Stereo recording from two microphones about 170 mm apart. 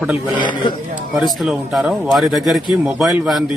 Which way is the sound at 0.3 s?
30° left (ahead or behind).